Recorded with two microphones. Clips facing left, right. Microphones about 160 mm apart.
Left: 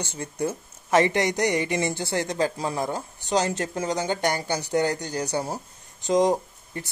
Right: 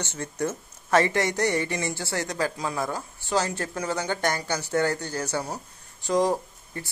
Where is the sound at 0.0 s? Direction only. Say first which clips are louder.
Left 1 dB; 10° left (ahead or behind).